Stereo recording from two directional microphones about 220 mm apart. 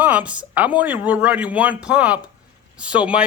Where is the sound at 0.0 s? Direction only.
5° right (ahead or behind).